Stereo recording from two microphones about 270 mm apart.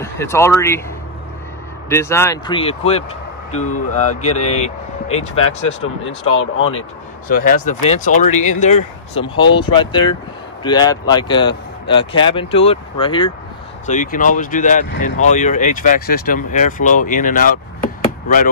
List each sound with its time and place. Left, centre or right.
0.0 s speech: centre
1.9 s speech: centre
6.0 s speech: left
7.2 s speech: left